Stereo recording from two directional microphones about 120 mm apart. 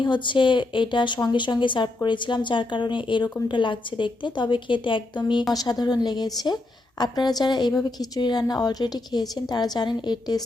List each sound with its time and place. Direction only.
0.0 s a woman's voice: 40° left (ahead or behind)